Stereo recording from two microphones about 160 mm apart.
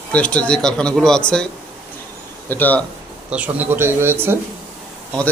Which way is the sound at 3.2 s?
10° right (ahead or behind).